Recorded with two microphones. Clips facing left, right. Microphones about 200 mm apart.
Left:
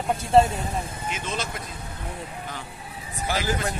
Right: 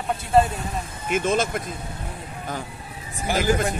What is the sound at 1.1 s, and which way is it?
Speech, 50° right (ahead or behind).